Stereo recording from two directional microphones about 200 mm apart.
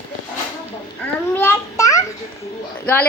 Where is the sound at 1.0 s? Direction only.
10° left (ahead or behind).